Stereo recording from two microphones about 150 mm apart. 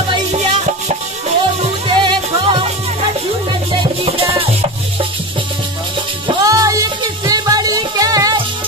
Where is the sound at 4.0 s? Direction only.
40° right (ahead or behind).